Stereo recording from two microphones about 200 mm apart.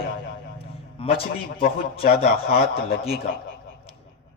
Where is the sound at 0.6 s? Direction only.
30° left (ahead or behind).